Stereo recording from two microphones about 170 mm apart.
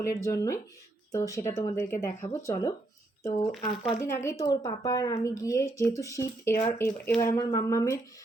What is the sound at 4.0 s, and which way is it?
Speech, 15° left (ahead or behind).